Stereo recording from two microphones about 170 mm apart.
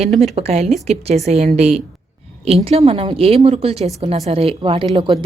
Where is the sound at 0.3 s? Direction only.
35° right (ahead or behind).